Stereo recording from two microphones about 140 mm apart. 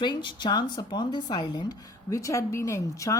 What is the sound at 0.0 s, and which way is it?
Speech, 35° left (ahead or behind).